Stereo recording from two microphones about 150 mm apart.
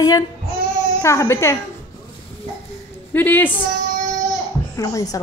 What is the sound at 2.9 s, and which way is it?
Speech, 10° left (ahead or behind).